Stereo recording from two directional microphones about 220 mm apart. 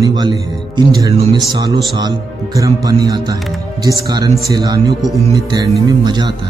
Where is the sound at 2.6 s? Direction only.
15° right (ahead or behind).